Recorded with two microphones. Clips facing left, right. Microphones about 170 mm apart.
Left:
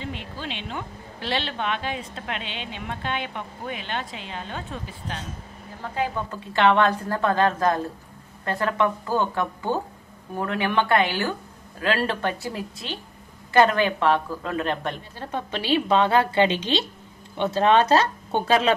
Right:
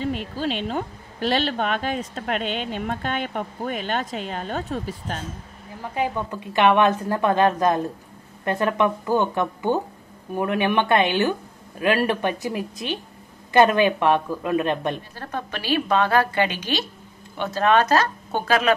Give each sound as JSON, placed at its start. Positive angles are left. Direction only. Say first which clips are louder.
{"t": 0.0, "sound": "speech", "louder": "right 8 dB", "side_deg": -45}
{"t": 6.5, "sound": "a man's voice", "louder": "right 2 dB", "side_deg": -15}
{"t": 15.1, "sound": "a woman's voice", "louder": "left 1 dB", "side_deg": 20}